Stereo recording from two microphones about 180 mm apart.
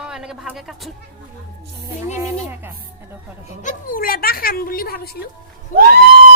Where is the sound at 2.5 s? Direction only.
10° right (ahead or behind).